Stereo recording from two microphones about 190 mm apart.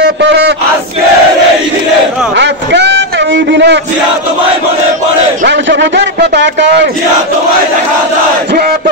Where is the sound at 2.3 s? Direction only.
65° right (ahead or behind).